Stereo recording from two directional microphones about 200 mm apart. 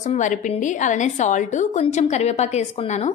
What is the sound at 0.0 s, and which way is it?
A woman's voice, 40° left (ahead or behind).